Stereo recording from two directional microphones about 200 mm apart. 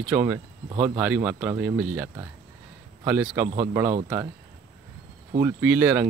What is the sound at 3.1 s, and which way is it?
Speech, 10° right (ahead or behind).